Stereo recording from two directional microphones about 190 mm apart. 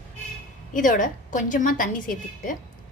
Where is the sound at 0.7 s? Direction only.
45° left (ahead or behind).